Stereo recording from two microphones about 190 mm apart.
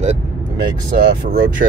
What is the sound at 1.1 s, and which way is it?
Speech, 55° right (ahead or behind).